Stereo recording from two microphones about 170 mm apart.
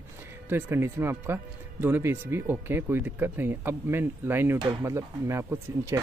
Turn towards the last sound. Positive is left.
turn(degrees=-15)  # may be behind; listen again after turning